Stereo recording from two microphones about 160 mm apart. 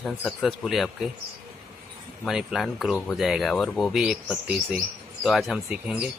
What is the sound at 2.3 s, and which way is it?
Speech, 5° right (ahead or behind).